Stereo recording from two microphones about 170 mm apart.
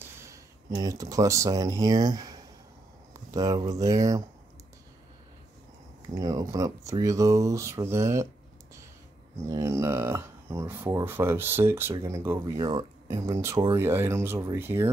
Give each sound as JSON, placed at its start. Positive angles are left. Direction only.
{"t": 0.0, "sound": "speech", "side_deg": -20}
{"t": 6.1, "sound": "speech", "side_deg": -20}
{"t": 9.5, "sound": "speech", "side_deg": -20}